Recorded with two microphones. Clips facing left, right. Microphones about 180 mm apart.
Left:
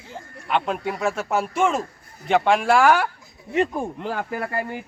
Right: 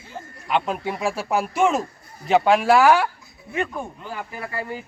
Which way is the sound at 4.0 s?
75° left (ahead or behind).